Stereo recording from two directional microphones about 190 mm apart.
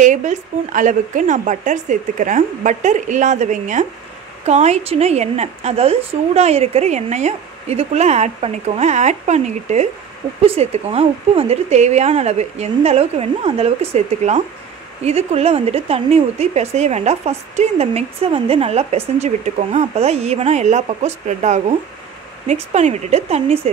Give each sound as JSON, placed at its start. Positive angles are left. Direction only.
{"t": 0.0, "sound": "speech", "side_deg": -40}